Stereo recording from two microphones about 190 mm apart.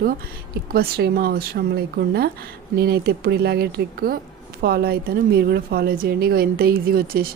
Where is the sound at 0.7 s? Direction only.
55° right (ahead or behind).